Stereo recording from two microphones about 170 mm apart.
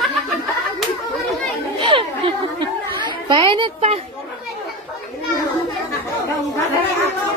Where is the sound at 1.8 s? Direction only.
30° right (ahead or behind).